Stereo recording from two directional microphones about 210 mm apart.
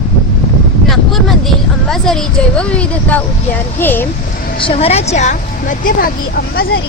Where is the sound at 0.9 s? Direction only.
Centre (ahead or behind).